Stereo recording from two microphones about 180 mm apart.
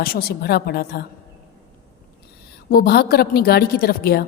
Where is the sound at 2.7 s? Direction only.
55° left (ahead or behind).